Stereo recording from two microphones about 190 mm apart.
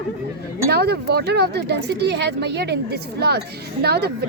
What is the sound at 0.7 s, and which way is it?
Speech, 60° right (ahead or behind).